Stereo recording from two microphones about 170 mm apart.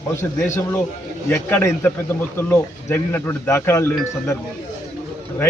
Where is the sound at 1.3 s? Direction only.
15° left (ahead or behind).